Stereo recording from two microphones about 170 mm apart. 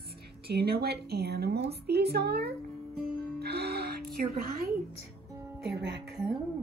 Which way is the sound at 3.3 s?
70° right (ahead or behind).